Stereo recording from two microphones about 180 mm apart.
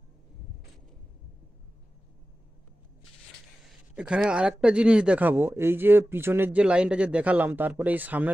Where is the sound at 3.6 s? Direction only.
5° right (ahead or behind).